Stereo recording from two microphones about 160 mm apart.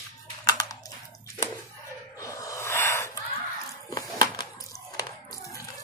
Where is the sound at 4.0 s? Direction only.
25° left (ahead or behind).